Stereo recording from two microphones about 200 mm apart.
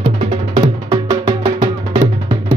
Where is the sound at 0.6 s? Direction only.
25° right (ahead or behind).